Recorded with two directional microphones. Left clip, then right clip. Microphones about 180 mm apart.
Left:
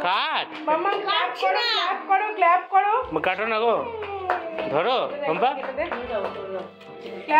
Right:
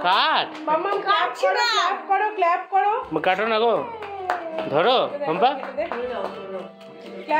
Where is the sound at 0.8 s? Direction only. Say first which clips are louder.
Right 4 dB; 25° right (ahead or behind).